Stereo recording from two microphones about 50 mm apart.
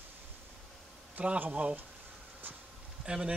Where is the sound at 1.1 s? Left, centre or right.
Right.